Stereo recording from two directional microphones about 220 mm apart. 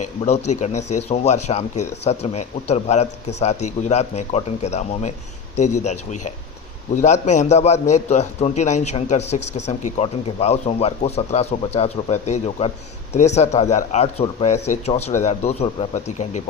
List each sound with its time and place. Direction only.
0.0 s speech: 30° left (ahead or behind)
0.7 s speech: 90° left
0.9 s a man's voice: 30° left (ahead or behind)